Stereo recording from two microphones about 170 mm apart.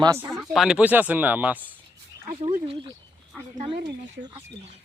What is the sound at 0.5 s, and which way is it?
Speech, 5° right (ahead or behind).